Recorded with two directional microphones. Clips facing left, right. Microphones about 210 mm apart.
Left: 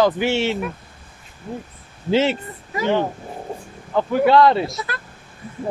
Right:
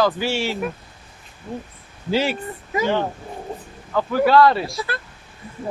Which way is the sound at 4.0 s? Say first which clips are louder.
Left 1 dB; 20° left (ahead or behind).